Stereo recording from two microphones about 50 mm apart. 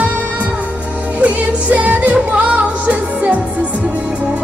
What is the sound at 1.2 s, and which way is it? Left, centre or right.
Music, right.